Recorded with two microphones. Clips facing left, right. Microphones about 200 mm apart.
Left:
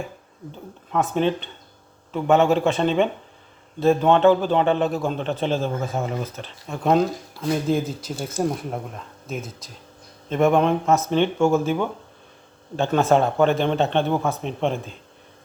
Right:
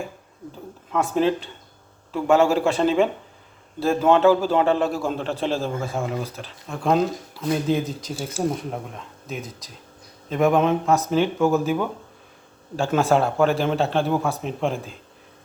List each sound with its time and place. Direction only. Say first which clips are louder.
0.9 s speech: right 1 dB; centre (ahead or behind)
10.2 s speech: left 1 dB; centre (ahead or behind)